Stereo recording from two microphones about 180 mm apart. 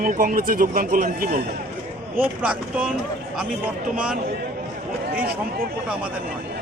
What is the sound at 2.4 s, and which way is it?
Speech, 5° right (ahead or behind).